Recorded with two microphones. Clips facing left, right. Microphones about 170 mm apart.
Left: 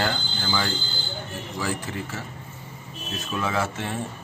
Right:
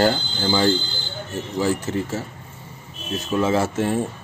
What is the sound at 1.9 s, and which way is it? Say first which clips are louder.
Speech: right 8 dB; 35° right (ahead or behind).